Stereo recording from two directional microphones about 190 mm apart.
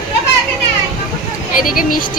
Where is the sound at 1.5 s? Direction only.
45° left (ahead or behind).